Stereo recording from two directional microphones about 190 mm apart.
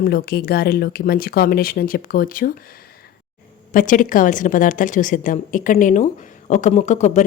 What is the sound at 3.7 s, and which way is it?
A woman's voice, 45° left (ahead or behind).